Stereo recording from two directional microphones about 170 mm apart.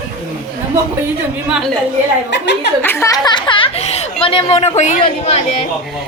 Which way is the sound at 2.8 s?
15° left (ahead or behind).